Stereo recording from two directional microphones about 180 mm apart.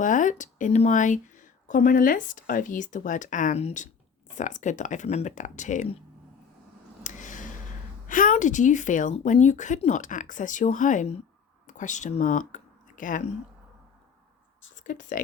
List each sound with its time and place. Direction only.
0.0 s speech: 45° left (ahead or behind)
7.0 s a sound: 45° left (ahead or behind)
8.0 s speech: 45° left (ahead or behind)
14.8 s speech: 45° left (ahead or behind)